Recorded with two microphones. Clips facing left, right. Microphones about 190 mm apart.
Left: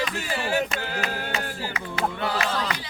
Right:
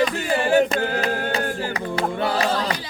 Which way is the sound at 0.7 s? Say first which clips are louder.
Right 7 dB; 35° right (ahead or behind).